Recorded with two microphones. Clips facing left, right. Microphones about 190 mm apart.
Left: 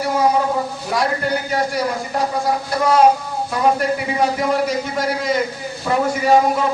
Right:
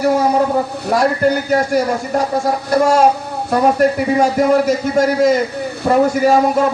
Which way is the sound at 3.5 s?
45° right (ahead or behind).